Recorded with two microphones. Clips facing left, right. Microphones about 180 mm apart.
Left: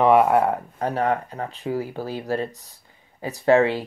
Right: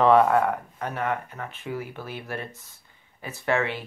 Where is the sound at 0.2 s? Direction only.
20° left (ahead or behind).